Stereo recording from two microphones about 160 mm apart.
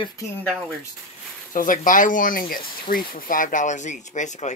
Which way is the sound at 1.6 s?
55° left (ahead or behind).